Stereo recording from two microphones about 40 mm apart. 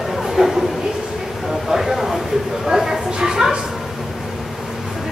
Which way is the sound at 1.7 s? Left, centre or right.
Centre.